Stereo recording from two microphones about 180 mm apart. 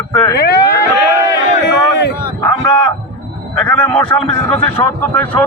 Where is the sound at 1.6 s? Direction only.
65° left (ahead or behind).